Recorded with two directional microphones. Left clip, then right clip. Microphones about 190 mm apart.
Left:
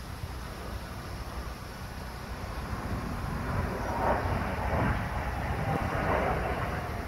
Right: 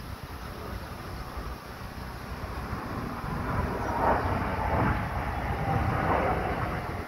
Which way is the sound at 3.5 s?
40° left (ahead or behind).